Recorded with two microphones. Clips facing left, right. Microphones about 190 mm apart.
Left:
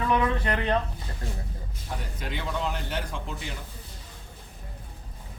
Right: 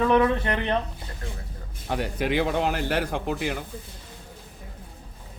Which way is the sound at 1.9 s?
75° right (ahead or behind).